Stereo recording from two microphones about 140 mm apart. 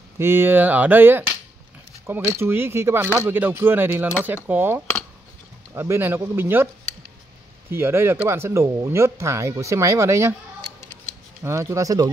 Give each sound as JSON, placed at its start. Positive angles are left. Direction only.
{"t": 0.2, "sound": "speech", "side_deg": -15}
{"t": 7.7, "sound": "speech", "side_deg": -15}
{"t": 11.4, "sound": "speech", "side_deg": -20}